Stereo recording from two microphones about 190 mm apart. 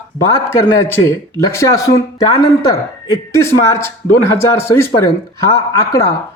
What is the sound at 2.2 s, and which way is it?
Speech, 20° left (ahead or behind).